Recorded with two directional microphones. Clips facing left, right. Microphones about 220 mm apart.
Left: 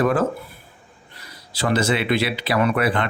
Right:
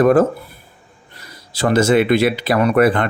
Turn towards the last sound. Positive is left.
turn(degrees=-45)  # may be behind; listen again after turning